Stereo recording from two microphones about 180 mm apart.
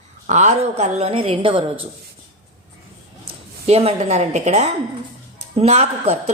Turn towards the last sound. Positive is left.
turn(degrees=-35)  # may be behind; listen again after turning